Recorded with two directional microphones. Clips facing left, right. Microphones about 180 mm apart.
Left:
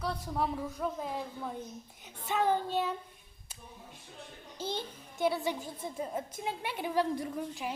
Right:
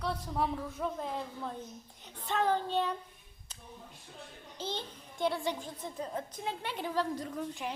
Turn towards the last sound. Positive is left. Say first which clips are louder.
# left 1 dB
turn(degrees=5)  # may be behind; listen again after turning